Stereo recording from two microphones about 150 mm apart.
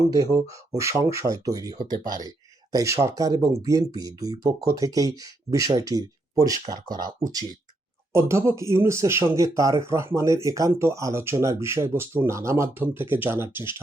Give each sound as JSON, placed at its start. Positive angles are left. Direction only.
{"t": 0.0, "sound": "speech", "side_deg": -25}